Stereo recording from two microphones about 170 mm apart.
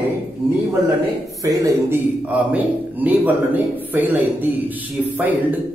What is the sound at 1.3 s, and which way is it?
Speech, 20° right (ahead or behind).